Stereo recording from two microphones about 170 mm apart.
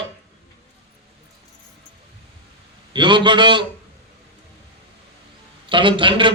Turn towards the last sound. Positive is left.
turn(degrees=-30)  # may be behind; listen again after turning